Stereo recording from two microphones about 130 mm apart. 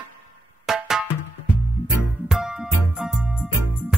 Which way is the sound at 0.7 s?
5° right (ahead or behind).